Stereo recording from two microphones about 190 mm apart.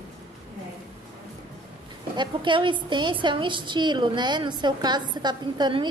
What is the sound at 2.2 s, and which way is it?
A woman's voice, 25° right (ahead or behind).